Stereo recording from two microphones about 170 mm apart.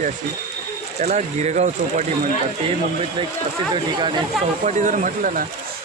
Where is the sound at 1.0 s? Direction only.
40° right (ahead or behind).